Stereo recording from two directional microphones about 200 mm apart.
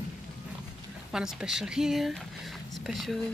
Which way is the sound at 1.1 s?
5° right (ahead or behind).